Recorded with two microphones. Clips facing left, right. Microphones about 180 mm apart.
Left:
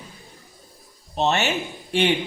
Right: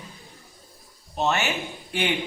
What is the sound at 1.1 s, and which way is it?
Speech, 25° left (ahead or behind).